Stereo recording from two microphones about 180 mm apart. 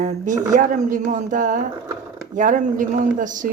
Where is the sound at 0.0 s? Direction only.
40° right (ahead or behind).